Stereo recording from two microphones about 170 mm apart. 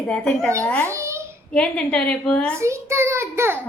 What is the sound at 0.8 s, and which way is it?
Babbling, 15° right (ahead or behind).